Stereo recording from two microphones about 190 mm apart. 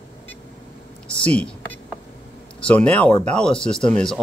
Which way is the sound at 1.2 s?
5° left (ahead or behind).